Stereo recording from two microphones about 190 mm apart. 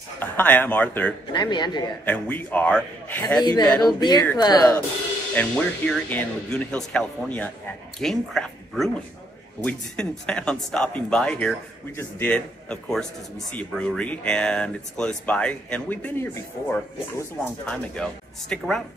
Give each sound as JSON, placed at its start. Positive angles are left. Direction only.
{"t": 0.2, "sound": "speech", "side_deg": 10}
{"t": 1.3, "sound": "speech", "side_deg": 25}
{"t": 2.0, "sound": "speech", "side_deg": 10}
{"t": 3.3, "sound": "speech", "side_deg": 20}
{"t": 5.3, "sound": "speech", "side_deg": 10}